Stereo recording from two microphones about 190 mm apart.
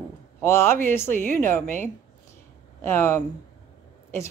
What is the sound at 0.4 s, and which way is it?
Speech, 15° left (ahead or behind).